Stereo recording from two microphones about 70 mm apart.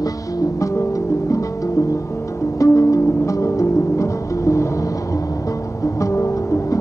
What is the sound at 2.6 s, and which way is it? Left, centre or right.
Music, left.